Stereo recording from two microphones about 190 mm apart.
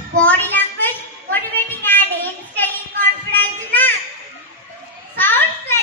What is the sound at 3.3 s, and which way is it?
Child singing, 10° left (ahead or behind).